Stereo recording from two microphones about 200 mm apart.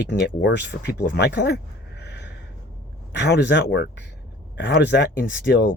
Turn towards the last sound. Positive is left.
turn(degrees=50)  # may be behind; listen again after turning